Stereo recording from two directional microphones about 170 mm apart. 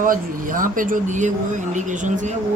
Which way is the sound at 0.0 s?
55° right (ahead or behind).